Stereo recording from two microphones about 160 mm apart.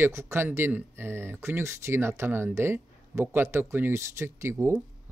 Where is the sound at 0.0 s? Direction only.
15° right (ahead or behind).